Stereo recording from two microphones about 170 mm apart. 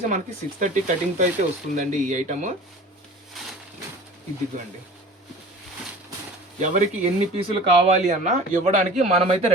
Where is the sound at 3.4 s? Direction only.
Centre (ahead or behind).